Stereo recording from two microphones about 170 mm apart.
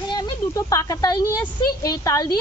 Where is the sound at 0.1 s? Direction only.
20° left (ahead or behind).